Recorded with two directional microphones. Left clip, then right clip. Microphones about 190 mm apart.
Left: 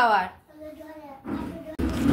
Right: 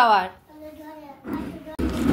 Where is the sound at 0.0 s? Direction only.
30° right (ahead or behind).